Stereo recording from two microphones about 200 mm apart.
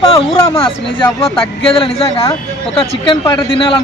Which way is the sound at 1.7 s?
30° left (ahead or behind).